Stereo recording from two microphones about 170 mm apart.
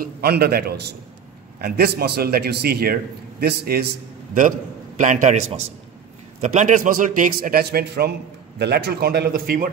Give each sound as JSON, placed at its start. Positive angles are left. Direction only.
{"t": 0.0, "sound": "a man's voice", "side_deg": -65}